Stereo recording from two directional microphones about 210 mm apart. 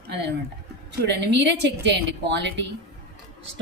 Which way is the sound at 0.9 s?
55° right (ahead or behind).